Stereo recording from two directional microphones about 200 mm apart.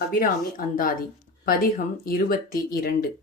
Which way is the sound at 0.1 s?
45° left (ahead or behind).